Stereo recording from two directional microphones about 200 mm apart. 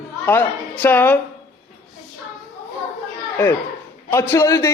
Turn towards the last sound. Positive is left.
turn(degrees=15)  # may be behind; listen again after turning